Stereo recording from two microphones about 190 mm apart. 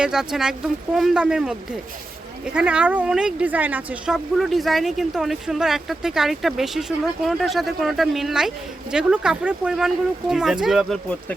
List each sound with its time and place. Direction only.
0.0 s speech: 5° right (ahead or behind)